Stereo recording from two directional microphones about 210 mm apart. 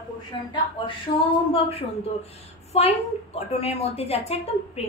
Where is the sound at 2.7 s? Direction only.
30° left (ahead or behind).